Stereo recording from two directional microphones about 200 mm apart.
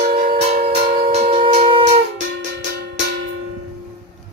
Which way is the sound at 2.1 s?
40° right (ahead or behind).